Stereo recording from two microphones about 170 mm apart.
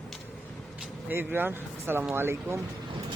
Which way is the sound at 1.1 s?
10° right (ahead or behind).